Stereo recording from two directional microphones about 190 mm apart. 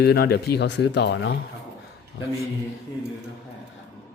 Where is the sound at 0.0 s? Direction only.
60° left (ahead or behind).